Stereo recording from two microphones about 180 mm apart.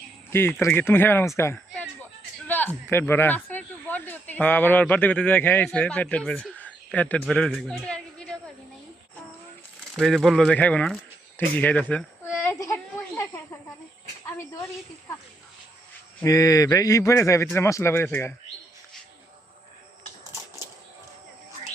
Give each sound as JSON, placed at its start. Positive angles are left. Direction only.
{"t": 0.3, "sound": "speech", "side_deg": 10}
{"t": 1.4, "sound": "a sound", "side_deg": 10}
{"t": 2.5, "sound": "a man's voice", "side_deg": 10}
{"t": 9.9, "sound": "speech", "side_deg": 0}
{"t": 11.5, "sound": "a sound", "side_deg": 10}
{"t": 13.1, "sound": "snake", "side_deg": 20}
{"t": 16.2, "sound": "speech", "side_deg": 20}